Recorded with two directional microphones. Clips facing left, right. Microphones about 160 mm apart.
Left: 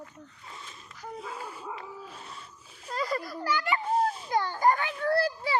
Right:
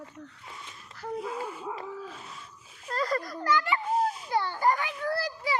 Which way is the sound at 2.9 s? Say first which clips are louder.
Right 2 dB; centre (ahead or behind).